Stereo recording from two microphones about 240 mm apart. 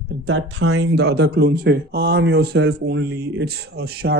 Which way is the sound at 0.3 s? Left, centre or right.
Right.